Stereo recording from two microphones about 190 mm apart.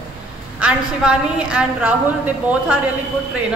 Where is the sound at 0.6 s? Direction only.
5° right (ahead or behind).